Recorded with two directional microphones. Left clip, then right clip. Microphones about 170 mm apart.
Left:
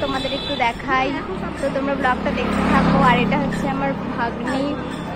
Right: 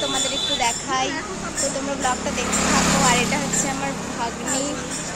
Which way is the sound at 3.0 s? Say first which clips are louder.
Left 3 dB; 5° right (ahead or behind).